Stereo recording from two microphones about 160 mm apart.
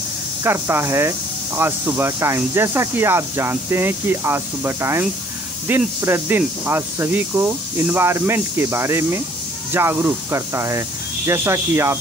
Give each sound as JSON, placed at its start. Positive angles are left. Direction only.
{"t": 0.4, "sound": "speech", "side_deg": -15}